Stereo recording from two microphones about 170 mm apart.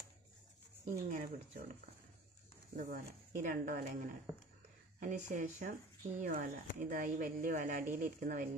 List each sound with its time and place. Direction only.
0.8 s speech: 50° right (ahead or behind)